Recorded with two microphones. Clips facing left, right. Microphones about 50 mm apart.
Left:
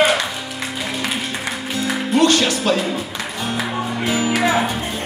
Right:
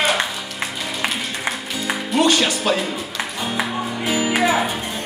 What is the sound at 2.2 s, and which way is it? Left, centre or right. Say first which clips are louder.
Music: left 2 dB; centre.